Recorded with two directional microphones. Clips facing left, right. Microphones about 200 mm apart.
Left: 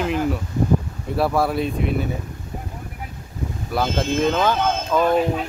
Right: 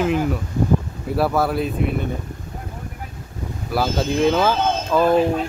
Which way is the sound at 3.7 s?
5° right (ahead or behind).